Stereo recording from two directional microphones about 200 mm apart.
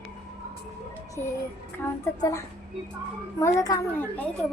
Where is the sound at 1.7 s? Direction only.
15° left (ahead or behind).